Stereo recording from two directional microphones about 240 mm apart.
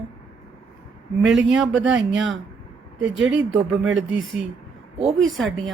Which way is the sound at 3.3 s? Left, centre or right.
Right.